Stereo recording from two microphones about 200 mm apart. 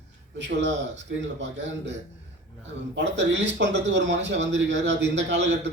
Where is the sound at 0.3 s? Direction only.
60° right (ahead or behind).